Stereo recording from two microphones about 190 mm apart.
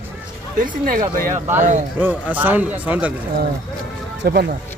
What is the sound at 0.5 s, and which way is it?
Speech, 45° right (ahead or behind).